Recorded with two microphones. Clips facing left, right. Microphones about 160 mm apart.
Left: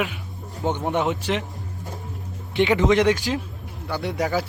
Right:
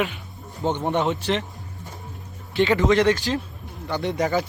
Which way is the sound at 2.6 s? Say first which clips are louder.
Even; 15° left (ahead or behind).